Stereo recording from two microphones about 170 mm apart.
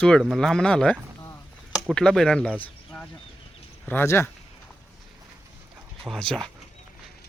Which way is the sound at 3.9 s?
10° left (ahead or behind).